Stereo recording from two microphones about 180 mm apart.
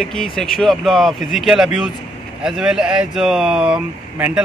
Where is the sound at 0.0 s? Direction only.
Centre (ahead or behind).